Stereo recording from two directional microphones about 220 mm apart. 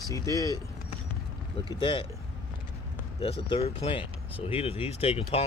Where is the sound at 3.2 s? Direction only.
25° left (ahead or behind).